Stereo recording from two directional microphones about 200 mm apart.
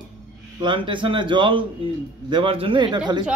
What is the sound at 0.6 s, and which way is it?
Speech, 25° right (ahead or behind).